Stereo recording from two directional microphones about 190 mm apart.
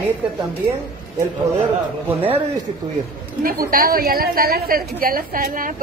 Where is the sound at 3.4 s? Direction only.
50° right (ahead or behind).